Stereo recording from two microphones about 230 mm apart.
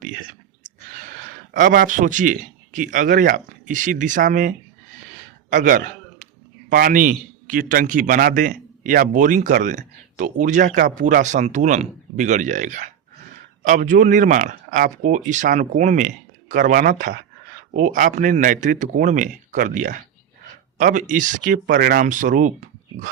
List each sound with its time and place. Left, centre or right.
1.5 s a man's voice: right
5.5 s a sound: right
6.7 s a man's voice: right